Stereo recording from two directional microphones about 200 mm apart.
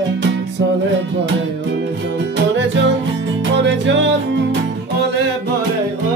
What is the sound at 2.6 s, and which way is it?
Music, 65° right (ahead or behind).